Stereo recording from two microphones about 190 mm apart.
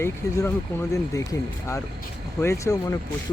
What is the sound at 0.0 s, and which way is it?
Speech, 15° left (ahead or behind).